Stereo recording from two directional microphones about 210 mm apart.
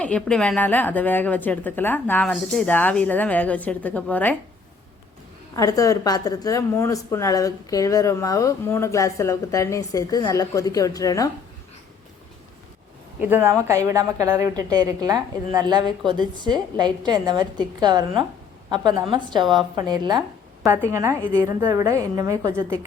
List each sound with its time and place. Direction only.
0.0 s a woman's voice: 5° left (ahead or behind)
5.5 s a woman's voice: 15° left (ahead or behind)
13.1 s a woman's voice: 10° right (ahead or behind)